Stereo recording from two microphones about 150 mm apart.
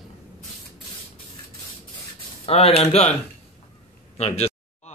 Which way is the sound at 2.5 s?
40° left (ahead or behind).